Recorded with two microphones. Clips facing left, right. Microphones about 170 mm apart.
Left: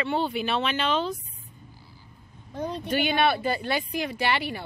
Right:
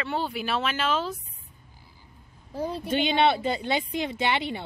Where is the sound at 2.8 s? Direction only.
25° right (ahead or behind).